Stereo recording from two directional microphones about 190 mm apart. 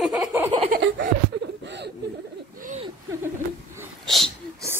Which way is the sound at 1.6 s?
65° right (ahead or behind).